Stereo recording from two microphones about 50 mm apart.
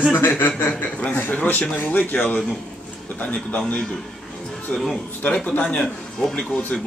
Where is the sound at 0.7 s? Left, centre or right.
Left.